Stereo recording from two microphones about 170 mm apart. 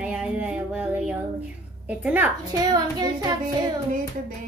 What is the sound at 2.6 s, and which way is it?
Child singing, 20° right (ahead or behind).